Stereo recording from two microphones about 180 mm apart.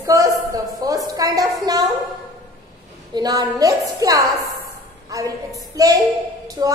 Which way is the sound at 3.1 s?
20° right (ahead or behind).